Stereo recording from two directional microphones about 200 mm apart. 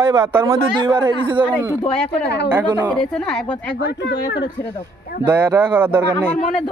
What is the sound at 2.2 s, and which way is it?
Speech, 55° left (ahead or behind).